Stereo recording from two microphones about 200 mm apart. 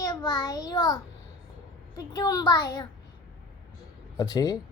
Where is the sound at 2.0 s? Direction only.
20° left (ahead or behind).